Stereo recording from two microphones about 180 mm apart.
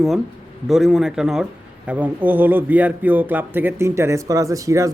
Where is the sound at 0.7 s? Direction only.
Centre (ahead or behind).